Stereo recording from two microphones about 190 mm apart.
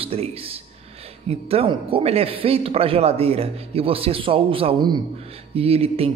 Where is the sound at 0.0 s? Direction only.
30° right (ahead or behind).